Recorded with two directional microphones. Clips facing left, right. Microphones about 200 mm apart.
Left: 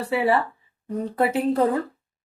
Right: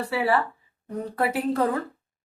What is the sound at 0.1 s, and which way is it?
A woman's voice, 20° left (ahead or behind).